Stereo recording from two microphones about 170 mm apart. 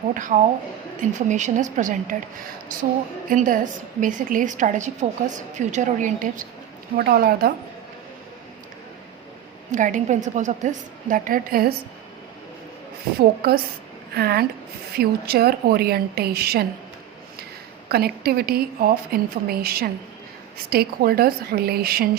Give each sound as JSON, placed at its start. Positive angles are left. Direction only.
{"t": 0.1, "sound": "a woman's voice", "side_deg": -50}
{"t": 3.2, "sound": "a woman's voice", "side_deg": -50}
{"t": 6.9, "sound": "a woman's voice", "side_deg": -65}
{"t": 9.7, "sound": "a woman's voice", "side_deg": -50}
{"t": 13.1, "sound": "a woman's voice", "side_deg": -65}
{"t": 17.8, "sound": "a woman's voice", "side_deg": -65}